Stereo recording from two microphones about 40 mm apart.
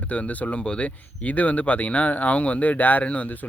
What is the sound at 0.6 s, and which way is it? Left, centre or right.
Speech, left.